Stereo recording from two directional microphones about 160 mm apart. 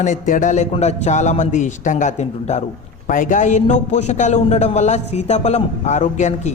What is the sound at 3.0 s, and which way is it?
A man's voice, 55° left (ahead or behind).